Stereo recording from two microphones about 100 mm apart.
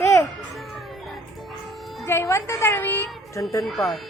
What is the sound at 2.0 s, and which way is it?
A woman's voice, 30° left (ahead or behind).